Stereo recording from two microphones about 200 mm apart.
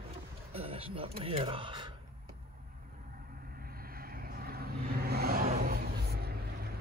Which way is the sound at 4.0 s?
50° right (ahead or behind).